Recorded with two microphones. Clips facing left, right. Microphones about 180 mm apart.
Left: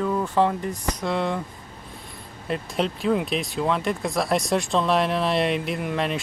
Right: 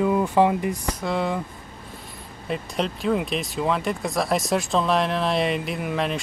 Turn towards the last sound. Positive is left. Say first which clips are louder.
# even
turn(degrees=0)  # may be behind; listen again after turning